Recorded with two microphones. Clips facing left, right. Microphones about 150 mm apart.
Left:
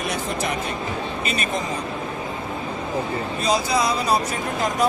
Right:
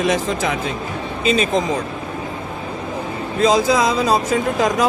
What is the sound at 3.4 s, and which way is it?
Speech, 90° right.